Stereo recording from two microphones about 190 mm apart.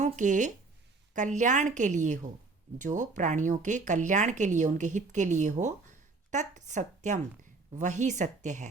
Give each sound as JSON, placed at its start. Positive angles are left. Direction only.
{"t": 0.0, "sound": "speech", "side_deg": -40}